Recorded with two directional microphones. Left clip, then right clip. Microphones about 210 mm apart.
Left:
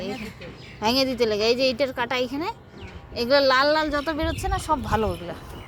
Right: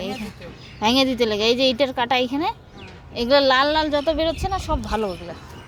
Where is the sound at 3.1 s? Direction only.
20° right (ahead or behind); by 5.1 s 5° left (ahead or behind).